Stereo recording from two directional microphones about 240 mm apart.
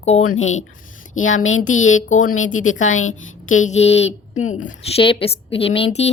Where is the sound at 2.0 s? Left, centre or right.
Left.